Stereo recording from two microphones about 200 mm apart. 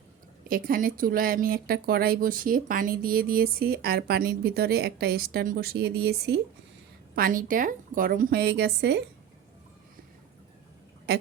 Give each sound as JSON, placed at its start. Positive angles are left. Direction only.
{"t": 0.4, "sound": "speech", "side_deg": -45}